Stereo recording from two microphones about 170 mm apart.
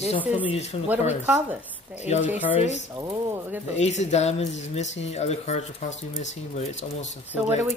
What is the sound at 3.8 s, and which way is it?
Speech, 40° left (ahead or behind).